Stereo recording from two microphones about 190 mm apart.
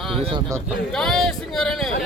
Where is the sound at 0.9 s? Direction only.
Centre (ahead or behind).